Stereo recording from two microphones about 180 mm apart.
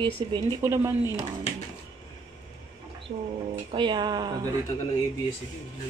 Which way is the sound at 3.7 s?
25° right (ahead or behind).